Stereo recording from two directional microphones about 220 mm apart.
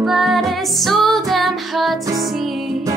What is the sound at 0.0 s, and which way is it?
Music, centre (ahead or behind).